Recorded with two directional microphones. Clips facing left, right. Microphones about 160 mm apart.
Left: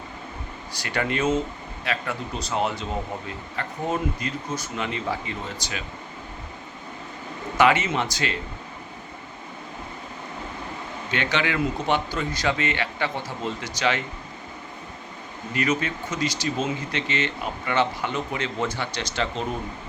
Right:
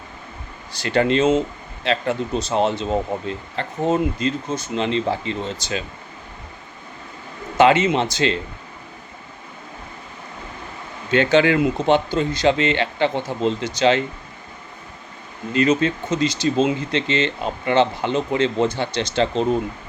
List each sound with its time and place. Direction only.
0.8 s speech: 25° right (ahead or behind)
7.6 s speech: 25° right (ahead or behind)
11.1 s speech: 30° right (ahead or behind)
15.5 s speech: 25° right (ahead or behind)